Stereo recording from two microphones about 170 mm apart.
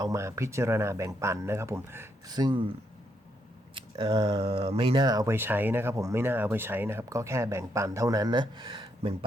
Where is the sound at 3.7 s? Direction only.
30° right (ahead or behind).